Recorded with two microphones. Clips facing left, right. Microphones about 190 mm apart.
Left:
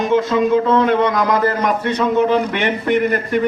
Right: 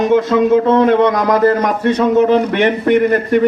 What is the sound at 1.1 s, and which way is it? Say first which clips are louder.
A man's voice: right 4 dB; 45° right (ahead or behind).